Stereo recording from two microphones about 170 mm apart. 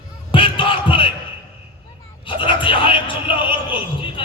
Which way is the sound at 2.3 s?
30° left (ahead or behind).